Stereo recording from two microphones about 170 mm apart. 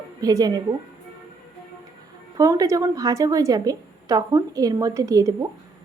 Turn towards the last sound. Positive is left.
turn(degrees=-20)  # may be behind; listen again after turning